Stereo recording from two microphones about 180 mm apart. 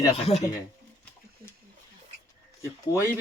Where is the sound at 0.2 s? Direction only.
35° left (ahead or behind).